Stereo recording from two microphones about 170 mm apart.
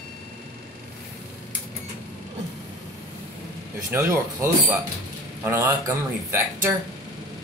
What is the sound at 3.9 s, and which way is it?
Speech, 15° right (ahead or behind).